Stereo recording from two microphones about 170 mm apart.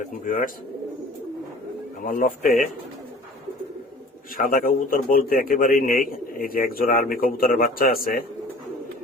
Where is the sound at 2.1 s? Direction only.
55° left (ahead or behind).